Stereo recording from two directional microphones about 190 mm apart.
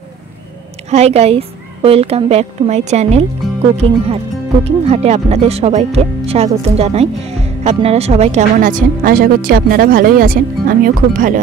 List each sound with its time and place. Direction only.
0.8 s a woman's voice: 35° right (ahead or behind)
4.6 s a woman's voice: 35° right (ahead or behind)